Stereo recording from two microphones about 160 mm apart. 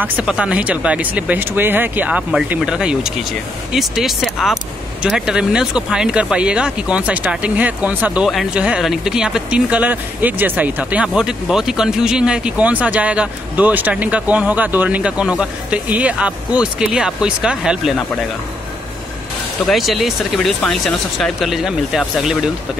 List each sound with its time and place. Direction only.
0.0 s speech: 5° right (ahead or behind)
19.7 s speech: centre (ahead or behind)